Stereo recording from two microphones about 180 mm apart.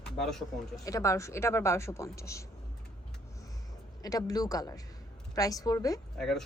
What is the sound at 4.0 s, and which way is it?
Speech, 20° left (ahead or behind).